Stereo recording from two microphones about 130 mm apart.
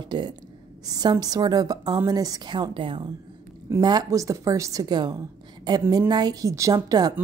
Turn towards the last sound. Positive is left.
turn(degrees=-30)  # may be behind; listen again after turning